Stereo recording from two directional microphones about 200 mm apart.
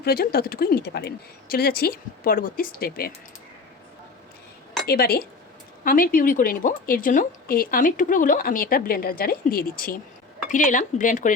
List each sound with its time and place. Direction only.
0.0 s a woman's voice: 50° left (ahead or behind)
4.9 s a woman's voice: 50° left (ahead or behind)